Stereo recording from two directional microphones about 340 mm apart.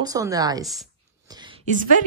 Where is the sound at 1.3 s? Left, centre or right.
Centre.